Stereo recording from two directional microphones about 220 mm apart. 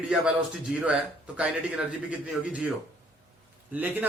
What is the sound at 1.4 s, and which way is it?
Speech, 5° right (ahead or behind).